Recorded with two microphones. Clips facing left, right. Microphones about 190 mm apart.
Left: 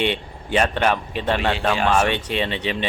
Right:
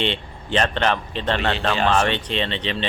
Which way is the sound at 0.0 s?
10° left (ahead or behind).